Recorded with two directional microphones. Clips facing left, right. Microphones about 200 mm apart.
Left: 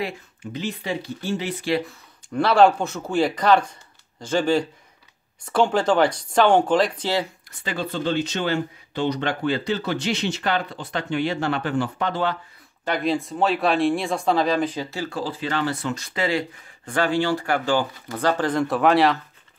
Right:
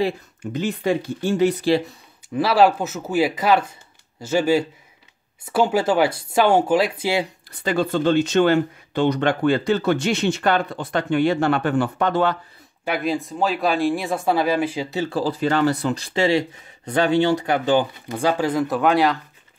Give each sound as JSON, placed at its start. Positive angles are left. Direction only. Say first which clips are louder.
{"t": 0.4, "sound": "speech", "louder": "right 4 dB", "side_deg": -50}
{"t": 2.3, "sound": "speech", "louder": "even", "side_deg": -5}
{"t": 7.6, "sound": "speech", "louder": "right 6 dB", "side_deg": -45}
{"t": 12.8, "sound": "speech", "louder": "even", "side_deg": -5}
{"t": 15.0, "sound": "speech", "louder": "right 6 dB", "side_deg": -35}